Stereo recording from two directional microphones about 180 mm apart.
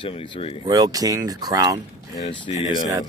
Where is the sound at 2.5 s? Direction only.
20° right (ahead or behind).